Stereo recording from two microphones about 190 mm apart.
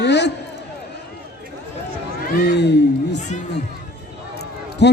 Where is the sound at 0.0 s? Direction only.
65° left (ahead or behind).